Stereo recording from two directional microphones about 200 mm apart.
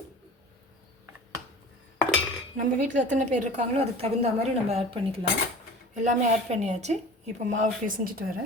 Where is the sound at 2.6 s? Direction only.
40° right (ahead or behind).